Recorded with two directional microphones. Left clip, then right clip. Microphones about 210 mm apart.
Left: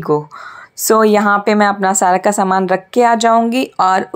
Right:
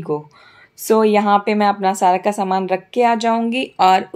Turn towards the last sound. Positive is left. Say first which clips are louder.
# left 1 dB
turn(degrees=15)  # may be behind; listen again after turning